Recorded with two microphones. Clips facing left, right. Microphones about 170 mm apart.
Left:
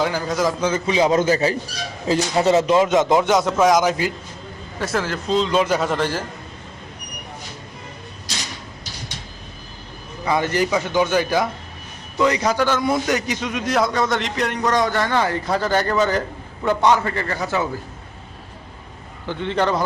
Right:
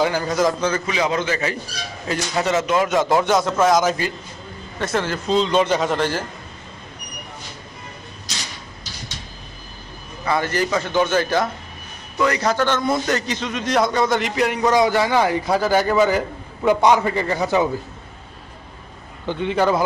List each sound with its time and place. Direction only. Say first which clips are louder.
0.0 s a man's voice: right 2 dB; centre (ahead or behind)
0.9 s a man's voice: left 5 dB; 30° left (ahead or behind); by 4.1 s 15° left (ahead or behind)
4.8 s a man's voice: right 1 dB; centre (ahead or behind)
10.2 s a man's voice: left 1 dB; 15° left (ahead or behind); by 17.7 s 15° right (ahead or behind)
19.3 s a man's voice: right 2 dB; 15° right (ahead or behind)